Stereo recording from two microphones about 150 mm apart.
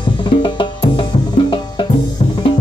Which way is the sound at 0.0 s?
30° left (ahead or behind).